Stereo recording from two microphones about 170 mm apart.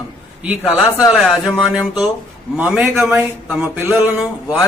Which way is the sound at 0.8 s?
Centre (ahead or behind).